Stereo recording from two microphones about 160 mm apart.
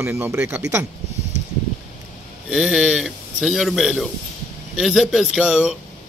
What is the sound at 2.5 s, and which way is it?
A man's voice, centre (ahead or behind).